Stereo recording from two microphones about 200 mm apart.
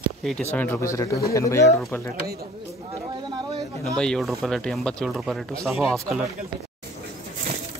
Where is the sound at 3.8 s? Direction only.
5° left (ahead or behind).